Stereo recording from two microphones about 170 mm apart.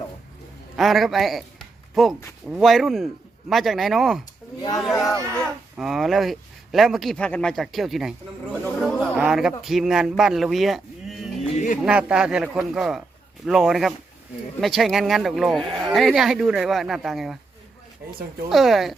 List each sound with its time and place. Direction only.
0.8 s speech: centre (ahead or behind)
8.6 s chatter: 5° left (ahead or behind)
9.1 s speech: 5° right (ahead or behind)
11.5 s a sound: 50° left (ahead or behind)
11.8 s speech: 5° right (ahead or behind)
18.4 s speech: centre (ahead or behind)